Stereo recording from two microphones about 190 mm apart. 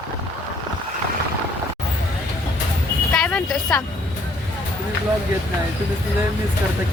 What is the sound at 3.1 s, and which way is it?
Vehicle, 5° left (ahead or behind).